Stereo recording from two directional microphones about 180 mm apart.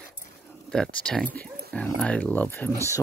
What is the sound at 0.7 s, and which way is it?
Speech, 5° left (ahead or behind).